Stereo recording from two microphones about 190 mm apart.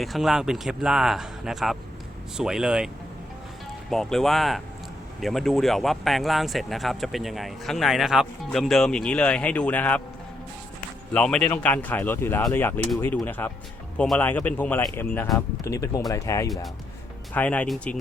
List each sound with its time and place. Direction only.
0.0 s speech: centre (ahead or behind)
11.1 s speech: 5° left (ahead or behind)